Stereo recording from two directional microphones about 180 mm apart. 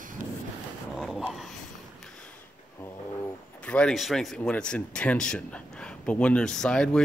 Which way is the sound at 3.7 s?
5° left (ahead or behind).